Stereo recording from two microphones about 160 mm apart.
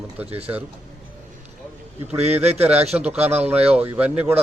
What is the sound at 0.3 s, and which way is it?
Speech, 40° right (ahead or behind).